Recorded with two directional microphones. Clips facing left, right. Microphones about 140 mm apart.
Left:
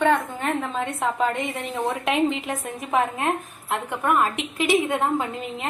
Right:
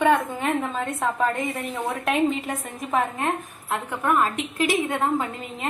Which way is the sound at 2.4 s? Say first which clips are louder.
Left 1 dB; centre (ahead or behind).